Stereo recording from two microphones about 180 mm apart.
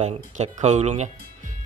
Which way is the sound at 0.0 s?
40° right (ahead or behind).